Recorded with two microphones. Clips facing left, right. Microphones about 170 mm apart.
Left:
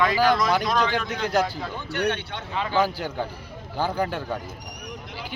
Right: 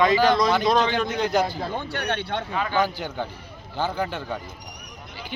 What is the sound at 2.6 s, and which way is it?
Speech, 30° left (ahead or behind).